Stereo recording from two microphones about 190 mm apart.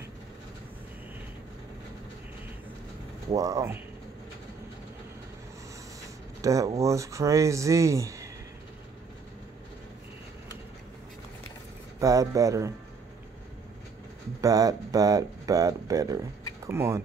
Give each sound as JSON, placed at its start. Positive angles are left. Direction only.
{"t": 3.3, "sound": "speech", "side_deg": -15}
{"t": 6.4, "sound": "speech", "side_deg": -15}
{"t": 12.0, "sound": "speech", "side_deg": -15}
{"t": 14.4, "sound": "speech", "side_deg": -20}